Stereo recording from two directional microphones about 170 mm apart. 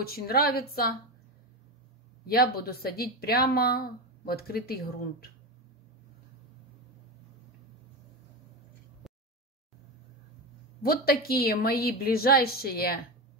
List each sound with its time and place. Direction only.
0.0 s speech: 65° left (ahead or behind)
2.2 s speech: 65° left (ahead or behind)
10.8 s speech: 60° left (ahead or behind)